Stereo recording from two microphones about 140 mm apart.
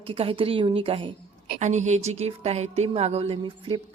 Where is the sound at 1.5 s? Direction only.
55° right (ahead or behind).